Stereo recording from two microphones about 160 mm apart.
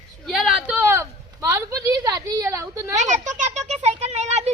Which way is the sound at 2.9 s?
50° right (ahead or behind).